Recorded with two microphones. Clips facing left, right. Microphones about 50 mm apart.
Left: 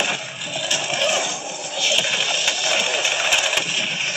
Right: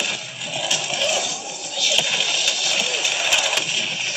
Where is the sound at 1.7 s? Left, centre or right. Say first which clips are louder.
Left 1 dB; left.